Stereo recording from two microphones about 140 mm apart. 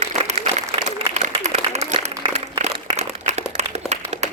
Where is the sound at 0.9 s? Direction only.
50° right (ahead or behind).